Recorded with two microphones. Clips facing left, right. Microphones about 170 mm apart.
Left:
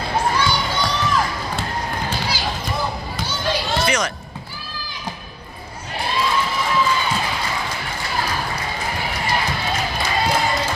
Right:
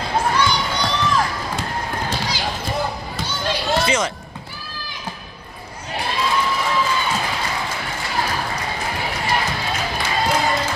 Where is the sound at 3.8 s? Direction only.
25° right (ahead or behind).